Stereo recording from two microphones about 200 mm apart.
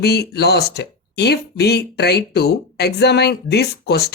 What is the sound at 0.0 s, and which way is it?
Speech, 55° left (ahead or behind).